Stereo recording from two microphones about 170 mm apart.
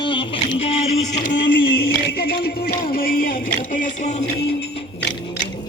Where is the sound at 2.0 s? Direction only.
70° left (ahead or behind); by 4.3 s 45° left (ahead or behind).